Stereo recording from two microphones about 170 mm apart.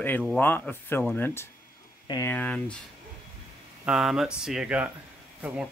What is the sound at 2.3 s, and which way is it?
Speech, 10° left (ahead or behind).